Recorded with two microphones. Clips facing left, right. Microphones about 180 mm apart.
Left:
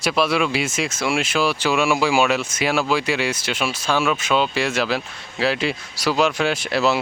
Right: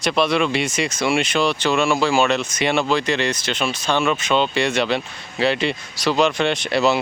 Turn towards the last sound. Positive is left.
turn(degrees=0)  # may be behind; listen again after turning